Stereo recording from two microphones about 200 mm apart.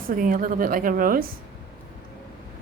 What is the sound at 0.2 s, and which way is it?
A woman's voice, 45° right (ahead or behind).